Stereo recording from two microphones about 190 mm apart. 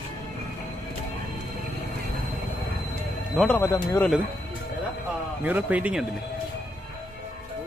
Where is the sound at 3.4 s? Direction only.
10° left (ahead or behind).